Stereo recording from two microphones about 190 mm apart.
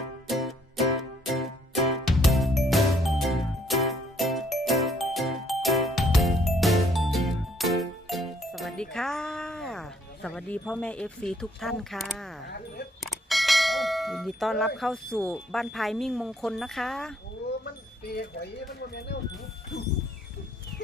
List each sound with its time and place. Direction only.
0.3 s music: centre (ahead or behind)
10.2 s speech: 5° left (ahead or behind)
12.5 s a sound: 55° left (ahead or behind)
13.0 s clang: centre (ahead or behind)
14.8 s speech: 5° left (ahead or behind)
18.9 s speech: 60° left (ahead or behind)